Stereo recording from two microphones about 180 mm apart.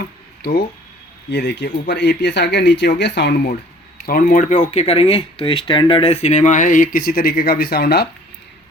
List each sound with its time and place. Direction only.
0.0 s a sound: 60° left (ahead or behind)
1.3 s speech: 70° left (ahead or behind)
4.0 s speech: 55° left (ahead or behind)